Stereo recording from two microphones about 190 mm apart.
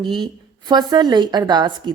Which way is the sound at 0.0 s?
25° right (ahead or behind).